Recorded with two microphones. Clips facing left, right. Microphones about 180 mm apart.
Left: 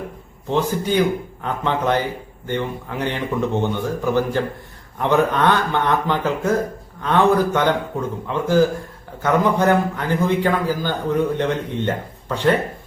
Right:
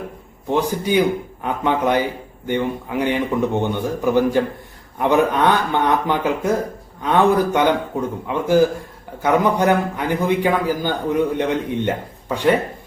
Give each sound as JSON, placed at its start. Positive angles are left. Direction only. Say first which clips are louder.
{"t": 0.4, "sound": "speech", "louder": "right 1 dB", "side_deg": -15}